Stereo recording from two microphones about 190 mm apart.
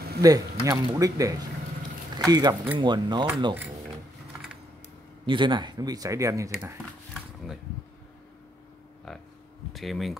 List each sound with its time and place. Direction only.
0.2 s speech: 20° right (ahead or behind)
5.2 s speech: 25° right (ahead or behind)
9.7 s speech: centre (ahead or behind)